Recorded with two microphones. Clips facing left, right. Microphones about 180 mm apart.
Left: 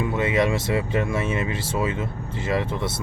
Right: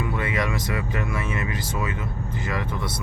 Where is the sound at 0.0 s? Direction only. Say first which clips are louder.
Left 5 dB; 20° left (ahead or behind).